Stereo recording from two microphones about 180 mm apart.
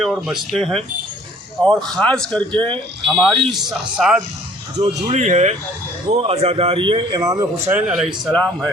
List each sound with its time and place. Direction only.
0.0 s a man's voice: centre (ahead or behind)
4.8 s speech: 35° right (ahead or behind); by 8.7 s 5° left (ahead or behind)